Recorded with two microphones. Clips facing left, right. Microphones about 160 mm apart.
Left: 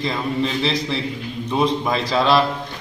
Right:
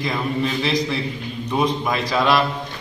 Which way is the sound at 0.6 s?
30° left (ahead or behind).